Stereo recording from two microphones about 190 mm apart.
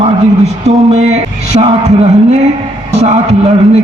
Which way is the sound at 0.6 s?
35° right (ahead or behind).